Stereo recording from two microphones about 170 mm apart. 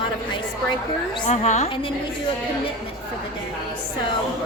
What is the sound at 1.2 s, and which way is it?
Speech, 45° left (ahead or behind).